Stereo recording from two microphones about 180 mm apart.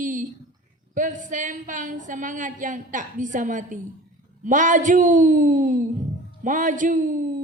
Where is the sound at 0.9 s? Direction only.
45° right (ahead or behind).